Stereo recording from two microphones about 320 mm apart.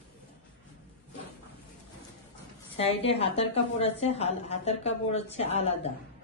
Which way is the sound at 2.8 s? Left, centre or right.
Centre.